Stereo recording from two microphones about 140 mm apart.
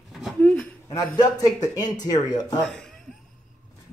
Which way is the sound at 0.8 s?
30° left (ahead or behind).